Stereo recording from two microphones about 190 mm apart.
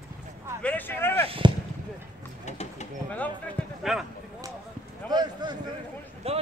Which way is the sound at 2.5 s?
40° left (ahead or behind).